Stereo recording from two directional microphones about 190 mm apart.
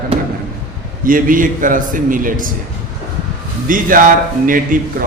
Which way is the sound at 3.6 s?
45° right (ahead or behind).